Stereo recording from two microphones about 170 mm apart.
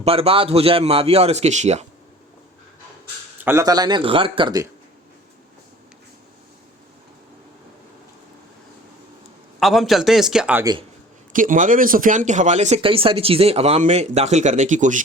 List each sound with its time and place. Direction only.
0.0 s a man's voice: 35° right (ahead or behind)
3.4 s a man's voice: 15° right (ahead or behind)
9.6 s speech: centre (ahead or behind)
11.3 s speech: 50° right (ahead or behind)